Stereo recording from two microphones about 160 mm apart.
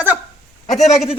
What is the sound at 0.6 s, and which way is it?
Speech, 45° left (ahead or behind).